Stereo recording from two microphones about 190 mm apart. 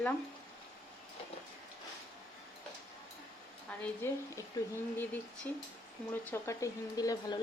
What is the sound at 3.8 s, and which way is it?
Speech, 10° left (ahead or behind).